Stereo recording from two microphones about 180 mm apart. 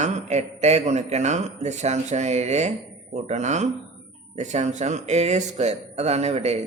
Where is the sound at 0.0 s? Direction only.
40° right (ahead or behind).